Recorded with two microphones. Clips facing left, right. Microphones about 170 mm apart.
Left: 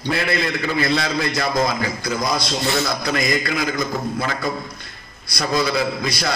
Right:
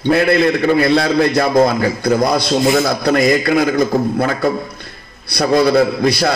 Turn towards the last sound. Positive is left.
turn(degrees=-55)  # may be behind; listen again after turning